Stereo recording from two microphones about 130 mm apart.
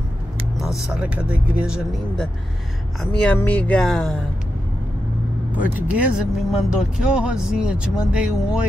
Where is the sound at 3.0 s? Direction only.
10° left (ahead or behind).